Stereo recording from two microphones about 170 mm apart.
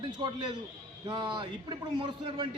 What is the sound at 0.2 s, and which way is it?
A man's voice, 25° right (ahead or behind).